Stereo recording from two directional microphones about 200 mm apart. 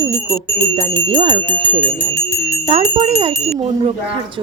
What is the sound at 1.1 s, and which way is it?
Speech, 35° right (ahead or behind).